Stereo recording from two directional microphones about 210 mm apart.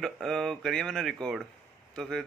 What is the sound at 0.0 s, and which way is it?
Speech, centre (ahead or behind).